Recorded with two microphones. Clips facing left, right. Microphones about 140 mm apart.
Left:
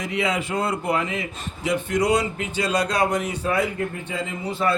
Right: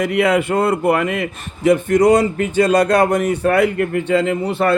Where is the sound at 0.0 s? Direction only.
60° right (ahead or behind).